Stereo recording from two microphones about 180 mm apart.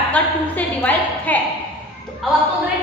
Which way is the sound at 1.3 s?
10° left (ahead or behind).